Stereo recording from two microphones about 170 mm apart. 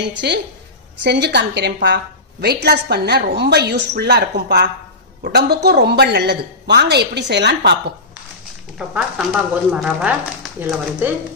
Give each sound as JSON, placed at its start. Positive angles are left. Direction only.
{"t": 0.2, "sound": "speech", "side_deg": -75}
{"t": 1.0, "sound": "a woman's voice", "side_deg": -90}
{"t": 2.4, "sound": "speech", "side_deg": -70}
{"t": 8.7, "sound": "speech", "side_deg": -5}